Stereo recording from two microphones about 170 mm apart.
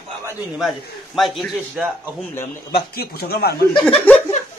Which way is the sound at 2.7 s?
65° left (ahead or behind).